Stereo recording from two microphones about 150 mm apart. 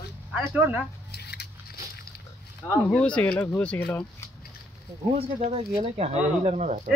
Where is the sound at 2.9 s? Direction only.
5° left (ahead or behind).